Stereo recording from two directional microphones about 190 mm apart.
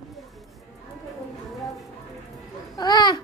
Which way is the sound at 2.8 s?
20° left (ahead or behind).